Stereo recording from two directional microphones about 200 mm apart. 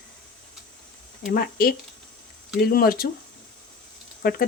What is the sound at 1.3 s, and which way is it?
Speech, 50° left (ahead or behind).